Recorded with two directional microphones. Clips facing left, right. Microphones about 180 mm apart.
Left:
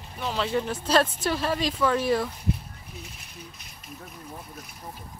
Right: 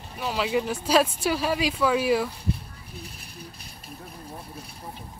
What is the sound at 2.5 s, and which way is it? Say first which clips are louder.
Speech: left 1 dB; 35° right (ahead or behind).